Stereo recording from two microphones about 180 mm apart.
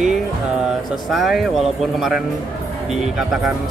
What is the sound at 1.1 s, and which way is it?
Speech, centre (ahead or behind).